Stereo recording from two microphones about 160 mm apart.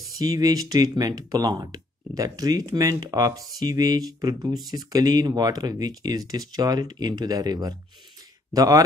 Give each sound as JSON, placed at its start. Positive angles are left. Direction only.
{"t": 0.2, "sound": "speech", "side_deg": -25}